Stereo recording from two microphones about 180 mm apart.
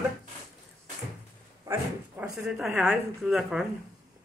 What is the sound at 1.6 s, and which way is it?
Speech, 10° right (ahead or behind).